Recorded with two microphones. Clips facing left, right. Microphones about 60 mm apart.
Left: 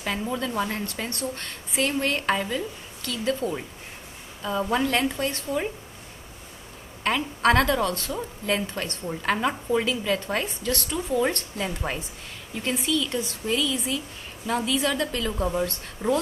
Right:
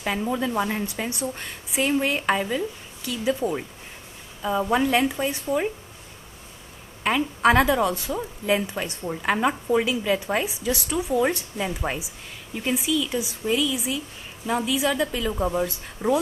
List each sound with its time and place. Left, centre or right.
0.0 s a woman's voice: centre
7.0 s a woman's voice: centre